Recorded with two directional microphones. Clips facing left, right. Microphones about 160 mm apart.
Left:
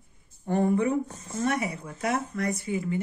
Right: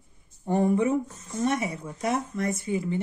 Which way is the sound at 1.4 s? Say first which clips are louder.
Right 1 dB; 25° right (ahead or behind).